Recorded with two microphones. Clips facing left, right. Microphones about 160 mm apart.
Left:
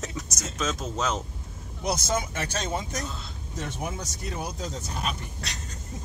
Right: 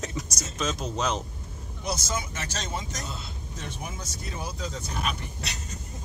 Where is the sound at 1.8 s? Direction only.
55° left (ahead or behind).